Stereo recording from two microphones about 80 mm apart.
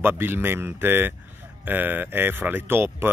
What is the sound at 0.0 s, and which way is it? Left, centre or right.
Speech, right.